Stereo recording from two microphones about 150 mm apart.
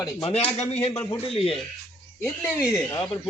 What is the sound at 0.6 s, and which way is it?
Speech, 45° left (ahead or behind).